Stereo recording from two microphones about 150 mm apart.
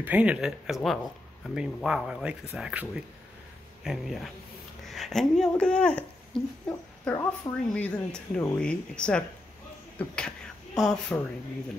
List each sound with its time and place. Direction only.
0.0 s speech: 10° right (ahead or behind); by 6.4 s 5° left (ahead or behind)
7.1 s speech: 25° left (ahead or behind)
7.7 s speech: 10° left (ahead or behind)